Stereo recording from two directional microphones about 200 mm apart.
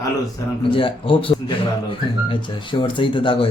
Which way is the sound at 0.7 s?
25° left (ahead or behind).